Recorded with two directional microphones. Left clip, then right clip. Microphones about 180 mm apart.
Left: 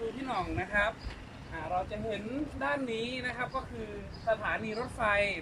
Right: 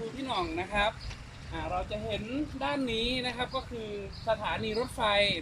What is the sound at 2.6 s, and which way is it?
A woman's voice, 10° right (ahead or behind).